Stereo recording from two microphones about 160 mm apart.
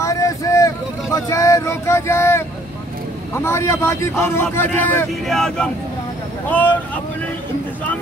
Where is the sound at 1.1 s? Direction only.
20° left (ahead or behind).